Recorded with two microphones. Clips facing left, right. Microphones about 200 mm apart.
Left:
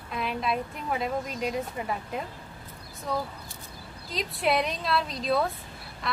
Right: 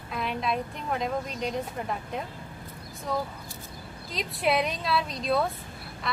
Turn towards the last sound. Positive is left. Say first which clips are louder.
# even
turn(degrees=0)  # may be behind; listen again after turning